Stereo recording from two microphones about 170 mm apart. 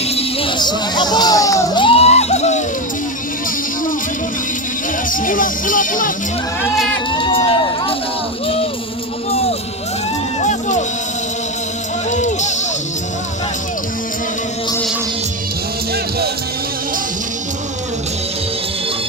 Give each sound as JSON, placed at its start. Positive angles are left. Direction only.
{"t": 0.2, "sound": "crowd", "side_deg": 30}
{"t": 5.1, "sound": "music", "side_deg": 50}
{"t": 7.1, "sound": "crowd", "side_deg": 30}
{"t": 10.4, "sound": "music", "side_deg": 45}
{"t": 12.1, "sound": "music", "side_deg": 45}